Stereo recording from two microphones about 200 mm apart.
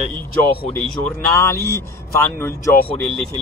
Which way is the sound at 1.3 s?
15° left (ahead or behind).